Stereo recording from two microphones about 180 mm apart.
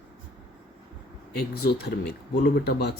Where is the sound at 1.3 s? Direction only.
65° left (ahead or behind).